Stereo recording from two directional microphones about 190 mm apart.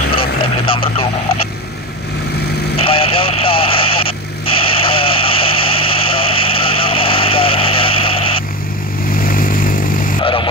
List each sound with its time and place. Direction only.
0.1 s vehicle: 30° left (ahead or behind)
2.8 s radio: 30° left (ahead or behind)
4.8 s vehicle: 30° left (ahead or behind)
9.1 s vehicle: 50° left (ahead or behind)
10.2 s music: 25° left (ahead or behind)